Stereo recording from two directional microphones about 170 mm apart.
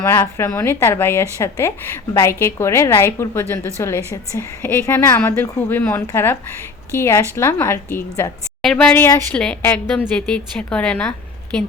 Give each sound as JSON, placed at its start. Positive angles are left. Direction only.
{"t": 0.0, "sound": "speech", "side_deg": 15}